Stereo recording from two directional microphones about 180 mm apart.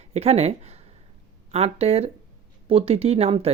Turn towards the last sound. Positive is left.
turn(degrees=-35)  # may be behind; listen again after turning